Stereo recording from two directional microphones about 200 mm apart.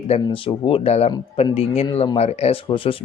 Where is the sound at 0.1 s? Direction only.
25° left (ahead or behind).